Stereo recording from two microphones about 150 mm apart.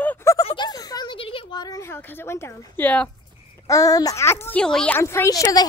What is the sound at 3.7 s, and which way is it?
A child's voice, 25° left (ahead or behind).